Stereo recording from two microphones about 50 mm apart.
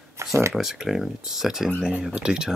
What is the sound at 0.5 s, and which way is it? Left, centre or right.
Speech, centre.